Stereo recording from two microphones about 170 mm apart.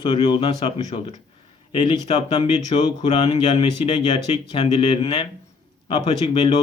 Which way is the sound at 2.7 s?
40° left (ahead or behind).